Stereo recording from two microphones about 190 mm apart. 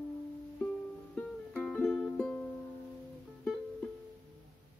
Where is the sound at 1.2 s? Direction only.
5° left (ahead or behind).